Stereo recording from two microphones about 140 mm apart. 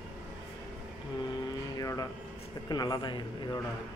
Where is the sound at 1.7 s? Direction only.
25° left (ahead or behind).